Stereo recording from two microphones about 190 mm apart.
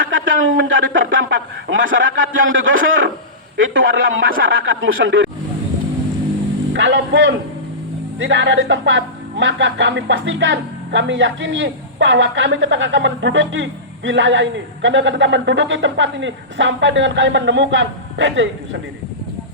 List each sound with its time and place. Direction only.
0.1 s a sound: 90° right
3.6 s a man's voice: 90° right
6.7 s speech: 70° right (ahead or behind)